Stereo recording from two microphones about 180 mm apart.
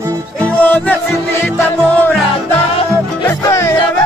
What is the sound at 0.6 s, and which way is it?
Music, 10° left (ahead or behind).